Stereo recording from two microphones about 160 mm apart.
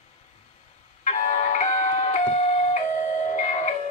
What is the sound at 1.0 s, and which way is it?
Music, 50° left (ahead or behind).